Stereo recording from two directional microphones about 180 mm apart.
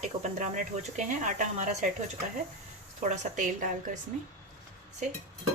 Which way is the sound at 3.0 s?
40° right (ahead or behind).